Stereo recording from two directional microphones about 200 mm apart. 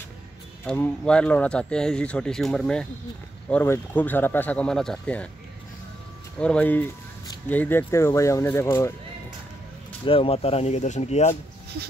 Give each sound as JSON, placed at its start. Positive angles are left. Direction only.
{"t": 0.7, "sound": "speech", "side_deg": 5}
{"t": 6.4, "sound": "speech", "side_deg": 5}
{"t": 10.0, "sound": "speech", "side_deg": 25}